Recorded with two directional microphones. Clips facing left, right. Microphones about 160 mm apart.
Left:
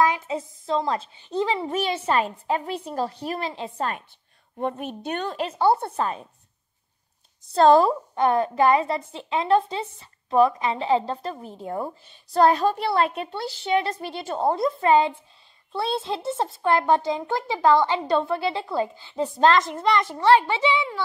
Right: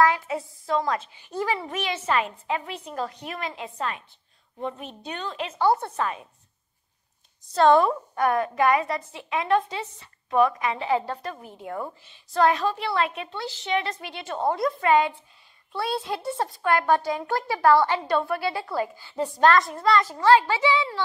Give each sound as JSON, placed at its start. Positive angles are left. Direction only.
{"t": 0.0, "sound": "a woman's voice", "side_deg": 20}
{"t": 4.6, "sound": "a woman's voice", "side_deg": 55}
{"t": 5.5, "sound": "a woman's voice", "side_deg": 30}
{"t": 7.5, "sound": "a woman's voice", "side_deg": 30}